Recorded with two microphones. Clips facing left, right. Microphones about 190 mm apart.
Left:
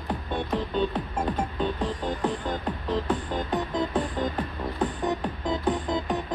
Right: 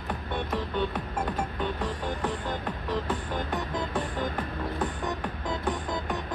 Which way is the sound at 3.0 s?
15° left (ahead or behind).